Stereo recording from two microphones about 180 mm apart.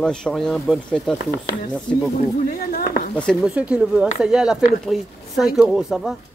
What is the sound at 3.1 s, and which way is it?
Speech, 5° left (ahead or behind).